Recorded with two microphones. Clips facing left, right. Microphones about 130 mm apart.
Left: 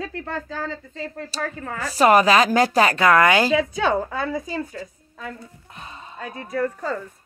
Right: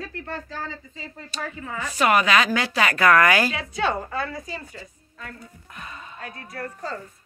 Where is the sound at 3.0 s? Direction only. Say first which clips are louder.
Right 1 dB; 25° left (ahead or behind).